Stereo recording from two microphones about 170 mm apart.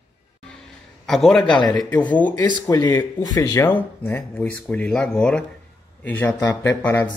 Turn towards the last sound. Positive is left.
turn(degrees=10)  # may be behind; listen again after turning